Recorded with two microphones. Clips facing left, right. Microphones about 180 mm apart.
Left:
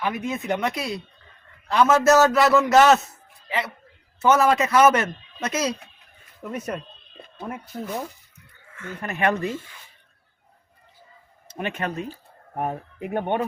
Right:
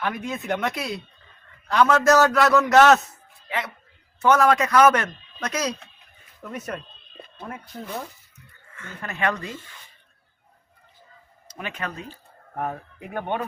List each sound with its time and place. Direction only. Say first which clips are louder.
0.0 s speech: left 2 dB; 5° left (ahead or behind)
4.2 s speech: even; 5° left (ahead or behind); by 9.6 s 20° left (ahead or behind)
11.5 s speech: left 5 dB; 25° left (ahead or behind)